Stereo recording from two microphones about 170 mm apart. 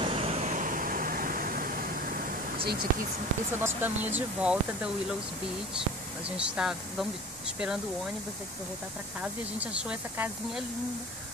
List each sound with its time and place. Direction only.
0.0 s vehicle: 35° right (ahead or behind); by 1.9 s 55° right (ahead or behind)
2.6 s speech: 65° right (ahead or behind)
3.6 s speech: 10° right (ahead or behind)
6.2 s speech: 5° right (ahead or behind)
9.2 s speech: 5° right (ahead or behind)